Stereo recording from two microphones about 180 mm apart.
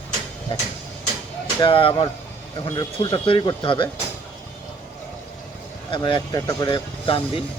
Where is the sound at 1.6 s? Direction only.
30° left (ahead or behind).